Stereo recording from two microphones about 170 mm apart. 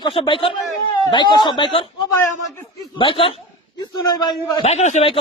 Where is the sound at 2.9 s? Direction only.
30° left (ahead or behind).